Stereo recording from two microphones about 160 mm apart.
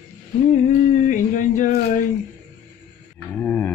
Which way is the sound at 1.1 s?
55° left (ahead or behind).